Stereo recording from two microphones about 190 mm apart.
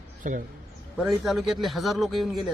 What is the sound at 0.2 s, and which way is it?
Speech, 45° right (ahead or behind).